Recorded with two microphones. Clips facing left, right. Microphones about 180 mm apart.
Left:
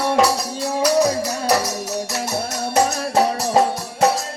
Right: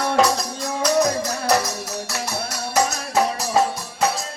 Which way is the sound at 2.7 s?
30° left (ahead or behind).